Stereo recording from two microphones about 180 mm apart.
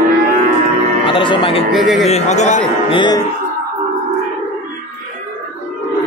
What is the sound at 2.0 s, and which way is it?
Speech, 40° left (ahead or behind).